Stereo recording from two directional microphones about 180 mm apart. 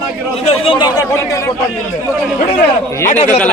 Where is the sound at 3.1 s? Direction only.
40° left (ahead or behind).